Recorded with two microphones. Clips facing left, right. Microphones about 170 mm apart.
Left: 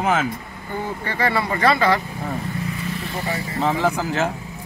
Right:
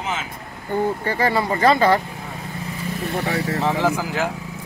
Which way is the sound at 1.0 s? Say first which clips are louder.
Right 2 dB; 40° right (ahead or behind).